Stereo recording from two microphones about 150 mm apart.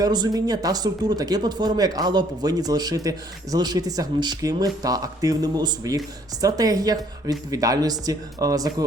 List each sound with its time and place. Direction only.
0.0 s speech: 25° right (ahead or behind)